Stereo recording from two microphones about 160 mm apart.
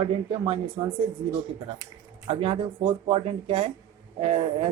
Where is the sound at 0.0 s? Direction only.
30° right (ahead or behind).